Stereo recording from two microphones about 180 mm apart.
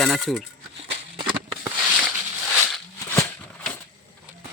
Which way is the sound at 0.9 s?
30° right (ahead or behind).